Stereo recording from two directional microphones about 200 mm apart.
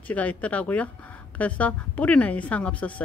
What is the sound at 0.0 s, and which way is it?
Speech, 5° left (ahead or behind).